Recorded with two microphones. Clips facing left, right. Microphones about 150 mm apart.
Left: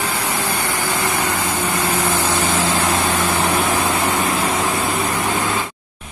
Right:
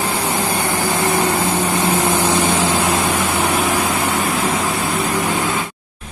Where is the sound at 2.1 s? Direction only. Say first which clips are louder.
Right 3 dB; 20° right (ahead or behind).